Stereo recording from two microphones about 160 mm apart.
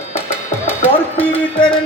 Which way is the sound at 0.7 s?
10° left (ahead or behind).